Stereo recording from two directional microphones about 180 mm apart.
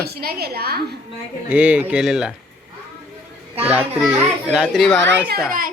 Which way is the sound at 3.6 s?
5° right (ahead or behind).